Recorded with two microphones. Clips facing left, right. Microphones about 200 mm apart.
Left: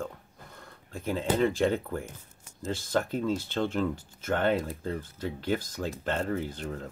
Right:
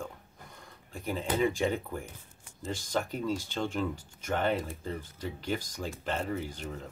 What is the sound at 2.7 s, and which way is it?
Speech, 15° right (ahead or behind).